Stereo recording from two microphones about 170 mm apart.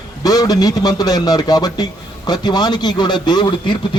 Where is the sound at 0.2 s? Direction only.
20° left (ahead or behind).